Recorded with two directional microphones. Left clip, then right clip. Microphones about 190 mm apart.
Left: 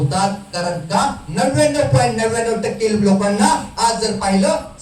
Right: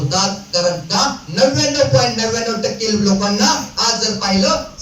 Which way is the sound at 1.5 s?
10° left (ahead or behind).